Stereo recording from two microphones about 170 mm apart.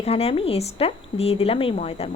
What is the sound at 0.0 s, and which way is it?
Speech, 35° left (ahead or behind).